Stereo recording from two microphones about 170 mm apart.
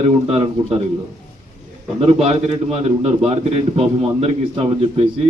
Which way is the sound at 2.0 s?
35° right (ahead or behind).